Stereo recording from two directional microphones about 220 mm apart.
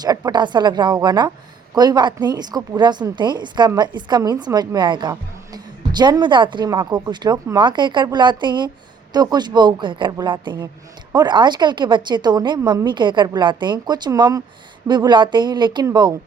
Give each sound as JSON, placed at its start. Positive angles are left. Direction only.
{"t": 0.0, "sound": "a woman's voice", "side_deg": -15}